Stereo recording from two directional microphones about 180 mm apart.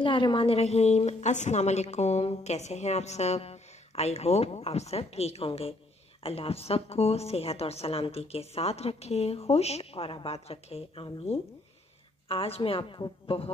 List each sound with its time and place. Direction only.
0.0 s a woman's voice: 25° left (ahead or behind)